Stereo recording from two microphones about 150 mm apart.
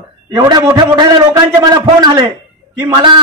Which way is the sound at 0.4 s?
20° right (ahead or behind).